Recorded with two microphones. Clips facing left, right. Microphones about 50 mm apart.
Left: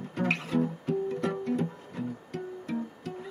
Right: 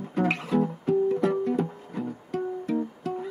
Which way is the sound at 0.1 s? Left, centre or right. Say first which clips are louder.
Right 4 dB; centre.